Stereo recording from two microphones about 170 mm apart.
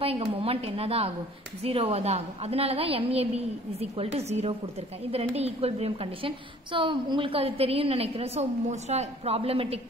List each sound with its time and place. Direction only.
0.0 s a woman's voice: 35° right (ahead or behind)